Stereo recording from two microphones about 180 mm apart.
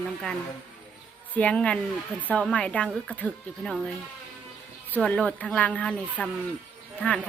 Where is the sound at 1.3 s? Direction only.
5° left (ahead or behind).